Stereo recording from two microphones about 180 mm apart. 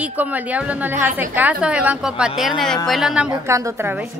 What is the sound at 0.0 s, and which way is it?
A woman's voice, 10° right (ahead or behind).